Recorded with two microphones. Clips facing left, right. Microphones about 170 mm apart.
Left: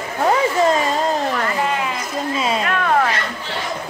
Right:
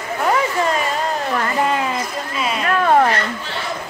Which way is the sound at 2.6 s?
30° right (ahead or behind).